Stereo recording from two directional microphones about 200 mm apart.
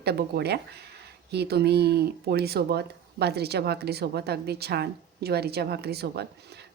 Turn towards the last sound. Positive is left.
turn(degrees=-55)  # may be behind; listen again after turning